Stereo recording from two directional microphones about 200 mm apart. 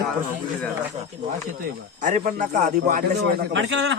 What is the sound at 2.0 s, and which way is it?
A man's voice, 40° right (ahead or behind).